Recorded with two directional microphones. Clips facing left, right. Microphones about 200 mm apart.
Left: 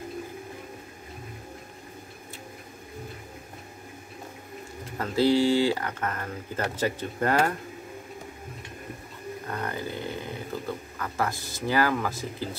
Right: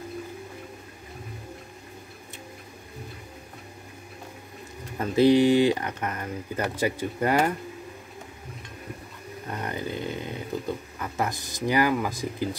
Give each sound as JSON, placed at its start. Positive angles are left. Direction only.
{"t": 4.9, "sound": "speech", "side_deg": -20}
{"t": 9.5, "sound": "a sound", "side_deg": -20}
{"t": 11.0, "sound": "speech", "side_deg": -20}